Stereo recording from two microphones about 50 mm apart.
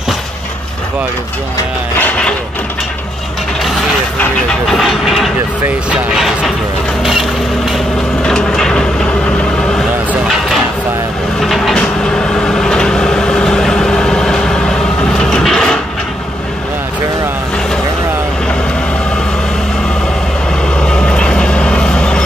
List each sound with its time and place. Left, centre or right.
4.6 s speech: centre
6.1 s vehicle: centre
7.0 s a sound: centre
8.2 s vehicle: centre
11.4 s vehicle: centre
12.0 s vehicle: centre
20.8 s vehicle: centre